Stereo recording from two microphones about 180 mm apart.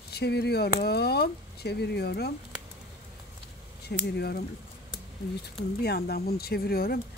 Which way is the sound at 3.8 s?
65° left (ahead or behind).